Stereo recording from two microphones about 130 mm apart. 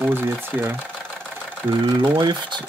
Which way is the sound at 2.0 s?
35° right (ahead or behind).